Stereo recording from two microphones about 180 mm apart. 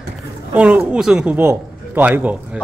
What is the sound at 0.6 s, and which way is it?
A man's voice, 5° right (ahead or behind).